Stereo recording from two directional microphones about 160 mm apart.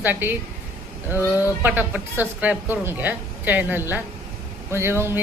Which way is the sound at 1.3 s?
10° right (ahead or behind).